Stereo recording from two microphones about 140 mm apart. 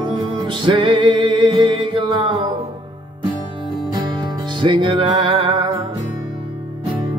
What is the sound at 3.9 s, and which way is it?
Music, 30° right (ahead or behind).